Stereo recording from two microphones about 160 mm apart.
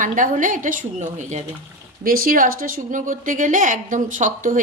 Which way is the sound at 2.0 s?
65° right (ahead or behind).